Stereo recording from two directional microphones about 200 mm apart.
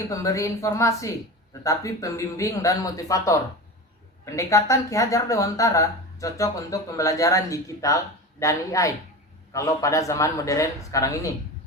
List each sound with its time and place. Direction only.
0.1 s speech: 15° left (ahead or behind)